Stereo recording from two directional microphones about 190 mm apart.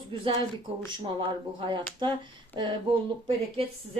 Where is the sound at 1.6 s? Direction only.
25° right (ahead or behind).